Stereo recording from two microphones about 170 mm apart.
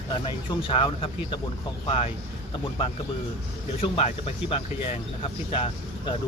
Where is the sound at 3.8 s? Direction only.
35° left (ahead or behind).